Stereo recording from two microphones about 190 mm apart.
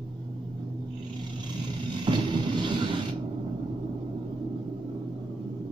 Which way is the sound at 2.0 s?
25° right (ahead or behind).